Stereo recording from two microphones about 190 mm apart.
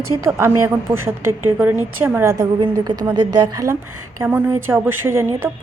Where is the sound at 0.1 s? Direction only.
15° right (ahead or behind).